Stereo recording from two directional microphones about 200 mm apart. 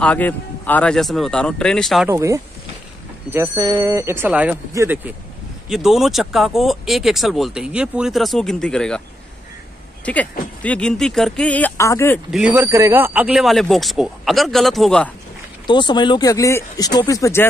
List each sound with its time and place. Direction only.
0.0 s speech: 5° left (ahead or behind)
2.0 s speech: 15° right (ahead or behind); by 9.0 s 5° left (ahead or behind)
10.6 s speech: 5° left (ahead or behind)
12.3 s speech: 5° right (ahead or behind)
15.6 s speech: 25° left (ahead or behind)